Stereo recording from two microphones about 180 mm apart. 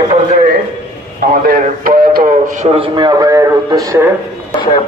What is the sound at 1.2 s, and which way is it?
A man's voice, 50° right (ahead or behind).